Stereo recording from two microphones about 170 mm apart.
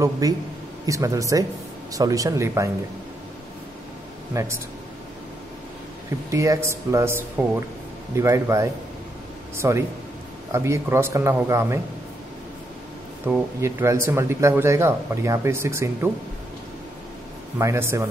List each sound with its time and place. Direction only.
0.2 s speech: 20° right (ahead or behind)
4.3 s speech: 15° right (ahead or behind)
6.3 s speech: 20° right (ahead or behind)
13.3 s speech: 15° right (ahead or behind)
17.6 s speech: 15° right (ahead or behind)